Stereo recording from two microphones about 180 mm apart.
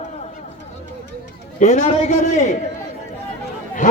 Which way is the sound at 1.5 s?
45° left (ahead or behind).